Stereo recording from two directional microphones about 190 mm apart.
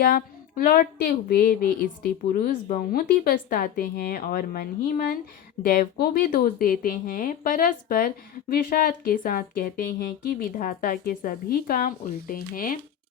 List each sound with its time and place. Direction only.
0.0 s speech: 50° left (ahead or behind)